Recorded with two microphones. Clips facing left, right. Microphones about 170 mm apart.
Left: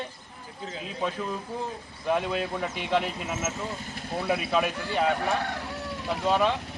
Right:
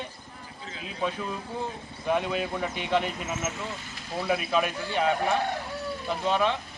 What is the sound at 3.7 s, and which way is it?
Speech, 40° left (ahead or behind).